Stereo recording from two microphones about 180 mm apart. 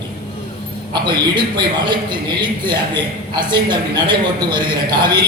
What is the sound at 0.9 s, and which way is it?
A man's voice, 25° right (ahead or behind).